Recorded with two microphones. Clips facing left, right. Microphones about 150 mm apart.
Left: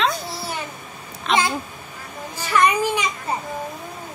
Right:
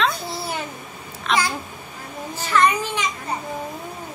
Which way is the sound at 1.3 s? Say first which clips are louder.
Left 1 dB; centre (ahead or behind).